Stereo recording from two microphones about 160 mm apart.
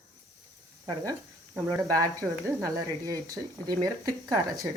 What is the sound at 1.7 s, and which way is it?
Speech, 20° right (ahead or behind).